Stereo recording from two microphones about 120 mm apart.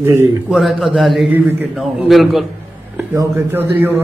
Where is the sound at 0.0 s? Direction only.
25° right (ahead or behind).